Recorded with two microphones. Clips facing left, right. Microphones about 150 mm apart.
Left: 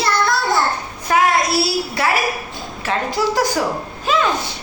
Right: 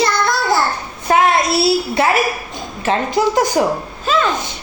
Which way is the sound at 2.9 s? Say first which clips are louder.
Right 4 dB; 20° right (ahead or behind).